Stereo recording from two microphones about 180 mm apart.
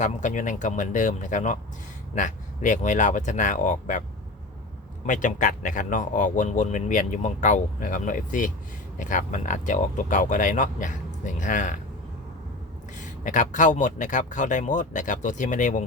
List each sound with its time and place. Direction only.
0.0 s speech: 45° left (ahead or behind)
5.0 s speech: 45° left (ahead or behind)
13.0 s speech: 45° left (ahead or behind)